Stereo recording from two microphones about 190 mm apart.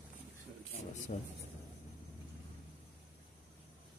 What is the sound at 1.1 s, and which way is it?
Speech, 50° left (ahead or behind).